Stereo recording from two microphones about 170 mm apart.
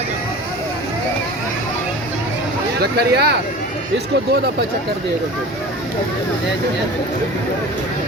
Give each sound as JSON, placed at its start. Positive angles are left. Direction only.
{"t": 2.8, "sound": "speech", "side_deg": -70}